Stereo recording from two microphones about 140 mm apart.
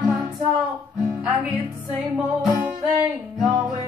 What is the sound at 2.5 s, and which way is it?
Music, 20° right (ahead or behind).